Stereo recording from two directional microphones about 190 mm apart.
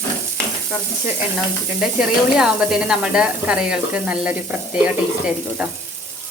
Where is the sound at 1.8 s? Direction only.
5° right (ahead or behind).